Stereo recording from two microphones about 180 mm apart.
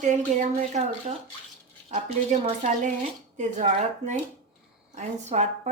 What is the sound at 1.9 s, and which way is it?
Speech, 45° right (ahead or behind).